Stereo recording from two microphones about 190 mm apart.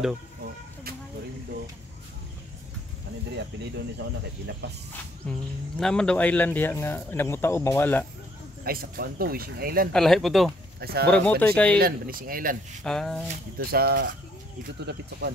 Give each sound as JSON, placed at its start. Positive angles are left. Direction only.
{"t": 3.3, "sound": "speech", "side_deg": -65}
{"t": 5.2, "sound": "a man's voice", "side_deg": 5}
{"t": 8.6, "sound": "speech", "side_deg": -50}
{"t": 9.9, "sound": "speech", "side_deg": 0}
{"t": 10.8, "sound": "speech", "side_deg": -55}
{"t": 11.1, "sound": "a man's voice", "side_deg": 5}
{"t": 11.8, "sound": "speech", "side_deg": -50}
{"t": 12.8, "sound": "speech", "side_deg": 0}
{"t": 13.3, "sound": "speech", "side_deg": -50}